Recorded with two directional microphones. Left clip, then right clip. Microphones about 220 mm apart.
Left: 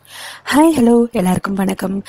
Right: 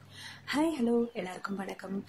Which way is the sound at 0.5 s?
45° left (ahead or behind).